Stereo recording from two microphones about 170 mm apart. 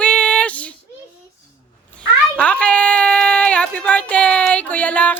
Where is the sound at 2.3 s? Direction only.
5° left (ahead or behind).